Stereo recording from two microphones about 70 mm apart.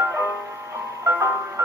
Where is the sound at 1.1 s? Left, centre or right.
Right.